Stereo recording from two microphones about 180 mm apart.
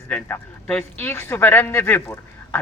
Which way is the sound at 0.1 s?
5° left (ahead or behind).